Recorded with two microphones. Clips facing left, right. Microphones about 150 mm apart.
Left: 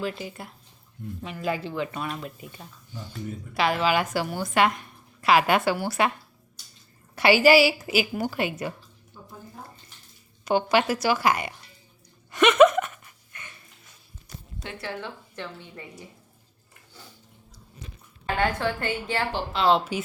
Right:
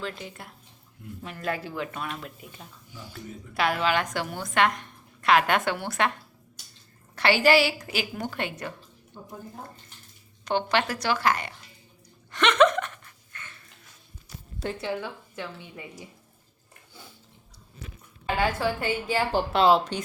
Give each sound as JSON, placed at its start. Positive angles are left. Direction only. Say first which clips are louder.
{"t": 0.2, "sound": "a woman's voice", "louder": "left 4 dB", "side_deg": 0}
{"t": 7.2, "sound": "a woman's voice", "louder": "left 3 dB", "side_deg": 10}
{"t": 10.4, "sound": "a woman's voice", "louder": "left 3 dB", "side_deg": 10}
{"t": 12.3, "sound": "a sound", "louder": "left 4 dB", "side_deg": 10}
{"t": 14.8, "sound": "a woman's voice", "louder": "right 3 dB", "side_deg": -15}
{"t": 18.3, "sound": "a woman's voice", "louder": "even", "side_deg": -10}
{"t": 19.7, "sound": "a woman's voice", "louder": "right 1 dB", "side_deg": 5}